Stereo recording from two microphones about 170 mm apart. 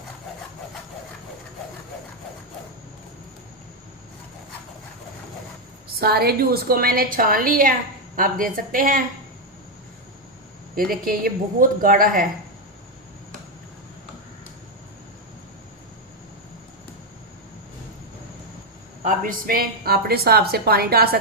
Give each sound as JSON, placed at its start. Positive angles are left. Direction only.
{"t": 6.0, "sound": "a woman's voice", "side_deg": -65}
{"t": 10.8, "sound": "a woman's voice", "side_deg": -55}
{"t": 19.0, "sound": "a woman's voice", "side_deg": -55}